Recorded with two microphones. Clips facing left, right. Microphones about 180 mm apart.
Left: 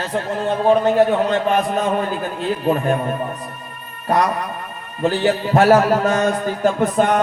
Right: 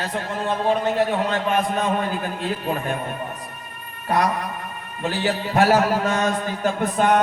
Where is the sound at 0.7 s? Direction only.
40° left (ahead or behind).